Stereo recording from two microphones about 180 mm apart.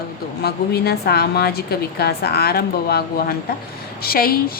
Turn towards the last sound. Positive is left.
turn(degrees=55)  # may be behind; listen again after turning